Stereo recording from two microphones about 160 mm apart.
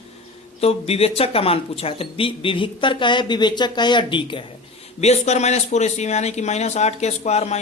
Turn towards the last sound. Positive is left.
turn(degrees=45)  # may be behind; listen again after turning